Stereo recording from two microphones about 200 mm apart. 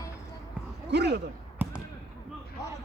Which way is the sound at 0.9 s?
55° right (ahead or behind).